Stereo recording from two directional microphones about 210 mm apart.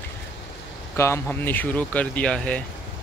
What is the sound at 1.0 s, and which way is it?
Speech, 10° left (ahead or behind).